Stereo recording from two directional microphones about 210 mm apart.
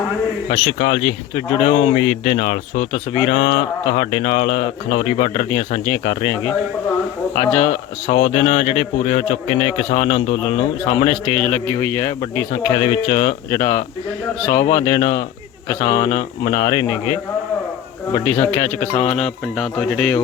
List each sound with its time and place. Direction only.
0.5 s speech: 25° left (ahead or behind)
14.6 s speech: 30° left (ahead or behind)
18.5 s speech: 10° left (ahead or behind)